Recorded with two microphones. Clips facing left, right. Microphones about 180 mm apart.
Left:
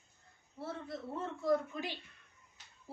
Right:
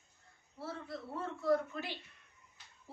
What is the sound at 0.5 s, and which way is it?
A man's voice, 25° left (ahead or behind).